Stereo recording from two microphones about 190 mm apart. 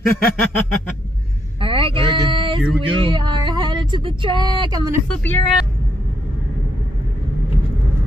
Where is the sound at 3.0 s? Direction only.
25° right (ahead or behind).